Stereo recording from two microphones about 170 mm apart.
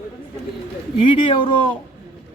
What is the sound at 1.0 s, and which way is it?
Speech, 30° left (ahead or behind).